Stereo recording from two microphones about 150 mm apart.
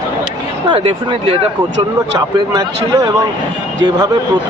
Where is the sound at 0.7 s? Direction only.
35° right (ahead or behind).